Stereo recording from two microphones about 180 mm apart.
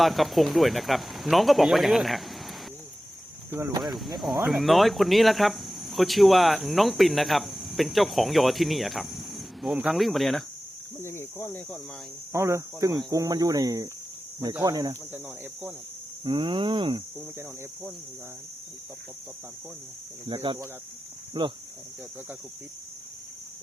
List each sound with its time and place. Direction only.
0.0 s speech: centre (ahead or behind)
3.5 s speech: 20° right (ahead or behind)
4.4 s speech: centre (ahead or behind)
11.0 s speech: 15° left (ahead or behind)
12.3 s speech: 15° right (ahead or behind)
16.2 s speech: 25° right (ahead or behind)
20.2 s speech: 30° right (ahead or behind)